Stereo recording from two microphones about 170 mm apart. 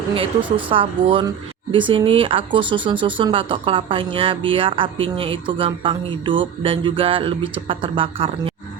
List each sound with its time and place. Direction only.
0.1 s speech: 30° right (ahead or behind)